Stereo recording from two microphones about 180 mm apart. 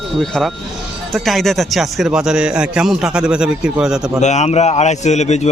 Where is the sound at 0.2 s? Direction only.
Centre (ahead or behind).